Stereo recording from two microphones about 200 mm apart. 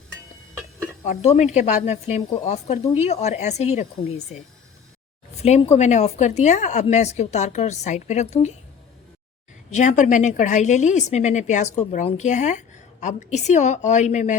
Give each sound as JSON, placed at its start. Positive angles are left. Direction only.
{"t": 1.0, "sound": "a woman's voice", "side_deg": 35}
{"t": 5.4, "sound": "a woman's voice", "side_deg": 30}
{"t": 9.7, "sound": "a woman's voice", "side_deg": 35}